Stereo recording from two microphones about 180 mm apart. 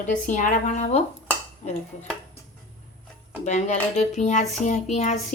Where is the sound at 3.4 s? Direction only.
40° left (ahead or behind).